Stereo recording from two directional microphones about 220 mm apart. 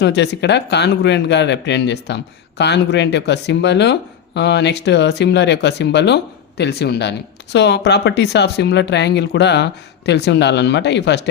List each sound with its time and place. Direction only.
0.0 s speech: 50° left (ahead or behind)